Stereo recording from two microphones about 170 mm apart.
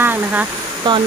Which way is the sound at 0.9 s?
25° right (ahead or behind).